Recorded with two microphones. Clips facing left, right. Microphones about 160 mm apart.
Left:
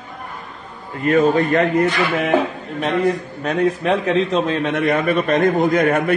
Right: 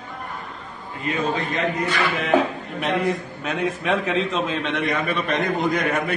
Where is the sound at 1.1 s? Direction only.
55° left (ahead or behind).